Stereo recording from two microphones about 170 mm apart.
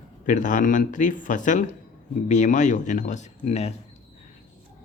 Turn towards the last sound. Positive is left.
turn(degrees=40)  # may be behind; listen again after turning